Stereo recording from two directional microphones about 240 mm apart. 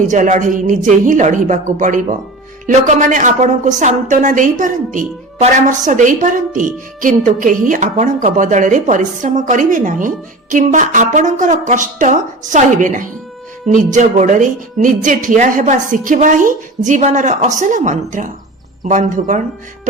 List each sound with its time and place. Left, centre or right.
0.1 s a woman's voice: right